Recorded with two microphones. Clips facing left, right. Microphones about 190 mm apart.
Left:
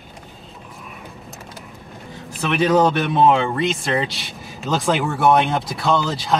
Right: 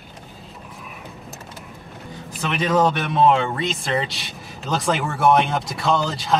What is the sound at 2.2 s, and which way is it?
Speech, centre (ahead or behind).